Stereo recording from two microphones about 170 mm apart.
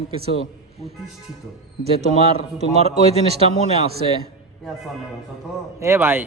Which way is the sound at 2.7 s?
40° right (ahead or behind).